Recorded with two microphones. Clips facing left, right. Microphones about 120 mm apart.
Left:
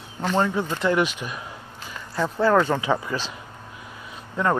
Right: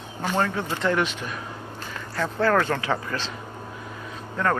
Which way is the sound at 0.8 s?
10° left (ahead or behind).